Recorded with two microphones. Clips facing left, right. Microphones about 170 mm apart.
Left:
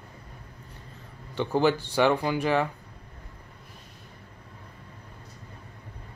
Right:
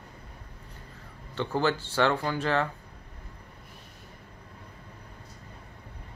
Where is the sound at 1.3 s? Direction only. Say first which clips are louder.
Left 4 dB; 15° left (ahead or behind).